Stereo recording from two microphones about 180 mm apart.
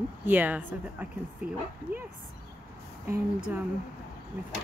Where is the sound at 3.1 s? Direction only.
10° right (ahead or behind).